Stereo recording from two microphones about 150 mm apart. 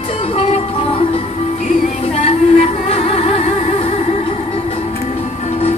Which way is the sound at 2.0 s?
40° left (ahead or behind).